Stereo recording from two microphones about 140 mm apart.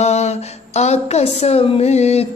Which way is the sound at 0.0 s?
50° left (ahead or behind).